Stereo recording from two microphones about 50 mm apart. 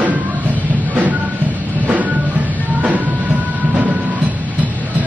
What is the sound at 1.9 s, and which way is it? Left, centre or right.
Music, right.